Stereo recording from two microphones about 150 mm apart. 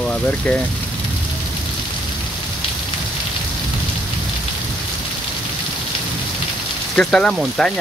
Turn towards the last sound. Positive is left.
turn(degrees=5)  # may be behind; listen again after turning